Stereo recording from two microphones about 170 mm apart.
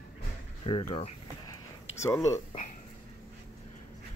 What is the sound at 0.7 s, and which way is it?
Speech, 35° left (ahead or behind).